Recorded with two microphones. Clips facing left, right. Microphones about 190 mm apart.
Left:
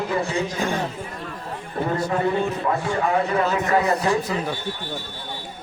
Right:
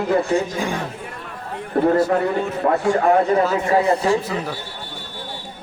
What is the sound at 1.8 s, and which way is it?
Speech, 60° right (ahead or behind).